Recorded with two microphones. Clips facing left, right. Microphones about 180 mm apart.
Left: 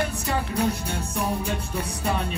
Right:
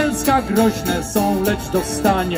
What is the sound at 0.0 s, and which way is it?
Music, 70° right (ahead or behind).